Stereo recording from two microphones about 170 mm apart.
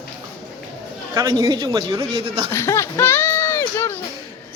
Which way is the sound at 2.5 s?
15° left (ahead or behind).